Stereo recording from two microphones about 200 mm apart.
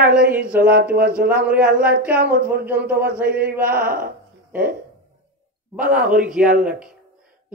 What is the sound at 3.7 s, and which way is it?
Speech, 45° right (ahead or behind).